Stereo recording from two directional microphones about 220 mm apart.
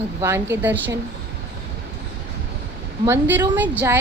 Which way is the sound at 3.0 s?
10° right (ahead or behind).